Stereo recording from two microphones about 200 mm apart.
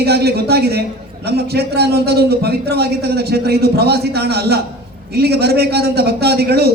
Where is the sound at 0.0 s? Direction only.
55° right (ahead or behind).